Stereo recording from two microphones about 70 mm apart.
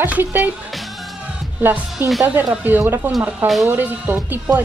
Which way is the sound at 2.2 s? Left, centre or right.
Right.